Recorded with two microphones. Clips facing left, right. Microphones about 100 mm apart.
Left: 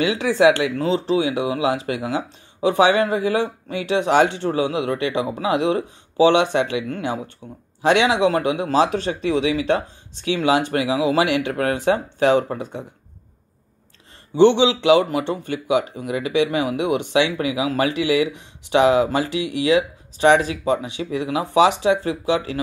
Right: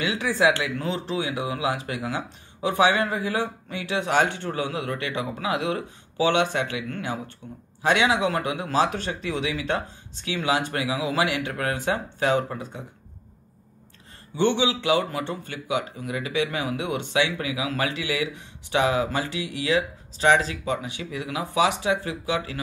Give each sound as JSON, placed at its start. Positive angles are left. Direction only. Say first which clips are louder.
{"t": 0.1, "sound": "speech", "louder": "left 4 dB", "side_deg": 20}
{"t": 0.8, "sound": "speech", "louder": "left 8 dB", "side_deg": 90}
{"t": 1.2, "sound": "speech", "louder": "left 6 dB", "side_deg": 25}
{"t": 14.3, "sound": "speech", "louder": "left 8 dB", "side_deg": 20}